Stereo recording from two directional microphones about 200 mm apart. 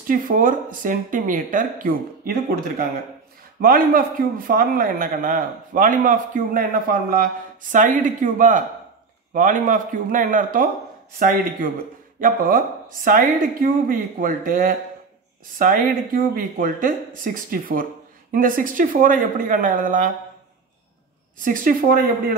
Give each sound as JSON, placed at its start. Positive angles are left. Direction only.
{"t": 0.1, "sound": "a man's voice", "side_deg": -45}
{"t": 12.2, "sound": "a man's voice", "side_deg": -45}
{"t": 21.5, "sound": "a man's voice", "side_deg": -45}